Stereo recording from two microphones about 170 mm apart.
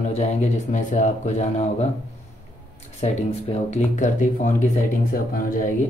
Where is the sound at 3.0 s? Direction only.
40° left (ahead or behind).